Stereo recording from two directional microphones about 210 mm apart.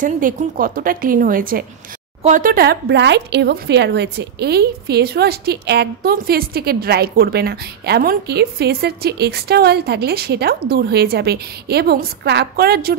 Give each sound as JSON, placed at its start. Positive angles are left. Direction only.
{"t": 0.0, "sound": "a woman's voice", "side_deg": -40}